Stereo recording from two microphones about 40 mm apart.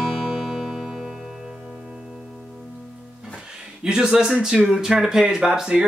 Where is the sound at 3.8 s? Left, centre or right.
Centre.